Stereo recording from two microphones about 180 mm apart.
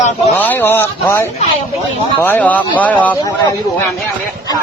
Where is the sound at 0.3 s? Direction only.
10° left (ahead or behind).